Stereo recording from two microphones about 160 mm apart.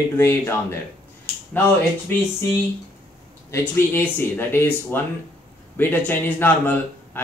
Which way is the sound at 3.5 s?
15° left (ahead or behind).